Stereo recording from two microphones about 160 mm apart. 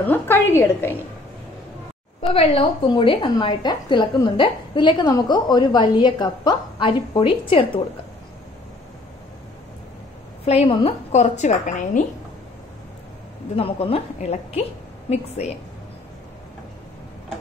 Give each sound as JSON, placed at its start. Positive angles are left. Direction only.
{"t": 0.0, "sound": "a woman's voice", "side_deg": 15}
{"t": 2.2, "sound": "a woman's voice", "side_deg": 35}
{"t": 10.4, "sound": "a woman's voice", "side_deg": 40}
{"t": 13.6, "sound": "a woman's voice", "side_deg": 35}